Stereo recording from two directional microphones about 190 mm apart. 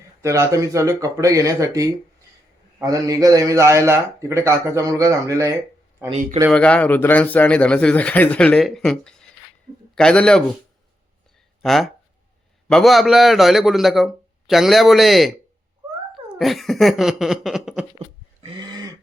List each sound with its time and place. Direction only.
0.2 s a man's voice: 15° right (ahead or behind)
6.5 s a man's voice: 5° left (ahead or behind)
11.6 s a man's voice: centre (ahead or behind)
18.4 s a sound: 25° right (ahead or behind)